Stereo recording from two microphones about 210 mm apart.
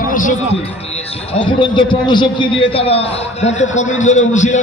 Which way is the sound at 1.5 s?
20° left (ahead or behind).